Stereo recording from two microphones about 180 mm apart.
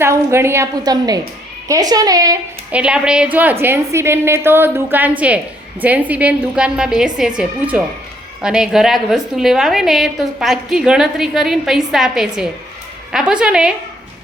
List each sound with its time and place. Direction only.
0.0 s a woman's voice: 15° right (ahead or behind)
2.7 s a woman's voice: 5° right (ahead or behind)